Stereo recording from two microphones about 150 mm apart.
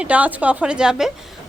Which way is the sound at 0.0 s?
10° right (ahead or behind).